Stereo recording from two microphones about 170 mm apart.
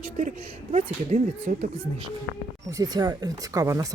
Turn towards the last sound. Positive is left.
turn(degrees=-20)  # may be behind; listen again after turning